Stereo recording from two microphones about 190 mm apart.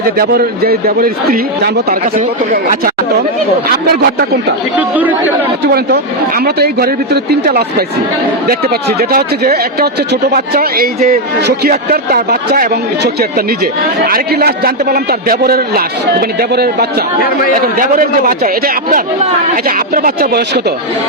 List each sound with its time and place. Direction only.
0.2 s a man's voice: 55° right (ahead or behind)
4.8 s speech: 10° right (ahead or behind)
5.7 s a man's voice: 55° right (ahead or behind)